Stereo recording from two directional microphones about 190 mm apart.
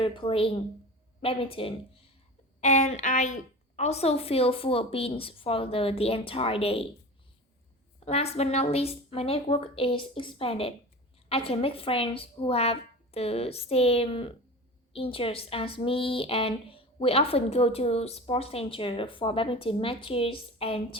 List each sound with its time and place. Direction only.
0.0 s a woman's voice: 30° left (ahead or behind)
8.0 s a woman's voice: 35° left (ahead or behind)